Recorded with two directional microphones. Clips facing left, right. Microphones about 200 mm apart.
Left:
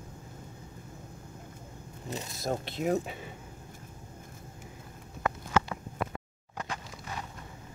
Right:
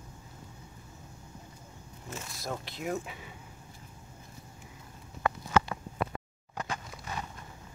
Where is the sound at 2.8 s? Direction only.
35° left (ahead or behind).